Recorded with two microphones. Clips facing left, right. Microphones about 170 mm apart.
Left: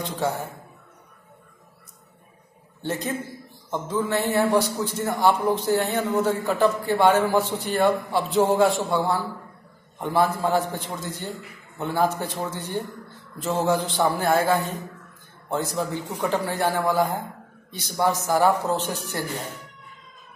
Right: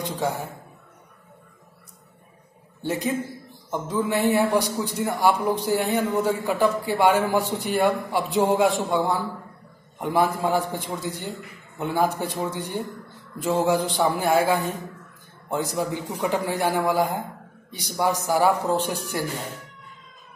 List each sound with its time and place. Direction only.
0.0 s a man's voice: 15° right (ahead or behind)
2.8 s a man's voice: 15° right (ahead or behind)